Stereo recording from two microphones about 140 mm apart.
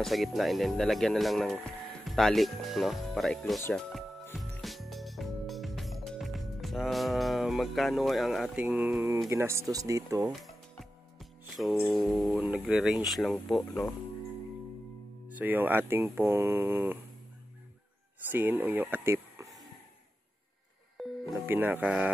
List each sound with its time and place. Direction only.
0.0 s speech: centre (ahead or behind)
4.4 s music: centre (ahead or behind)
9.3 s speech: 20° right (ahead or behind)
10.4 s music: centre (ahead or behind)
12.4 s speech: 5° right (ahead or behind)
15.2 s speech: 10° right (ahead or behind)
18.3 s speech: 15° right (ahead or behind)
21.0 s music: centre (ahead or behind)
21.5 s speech: 10° right (ahead or behind)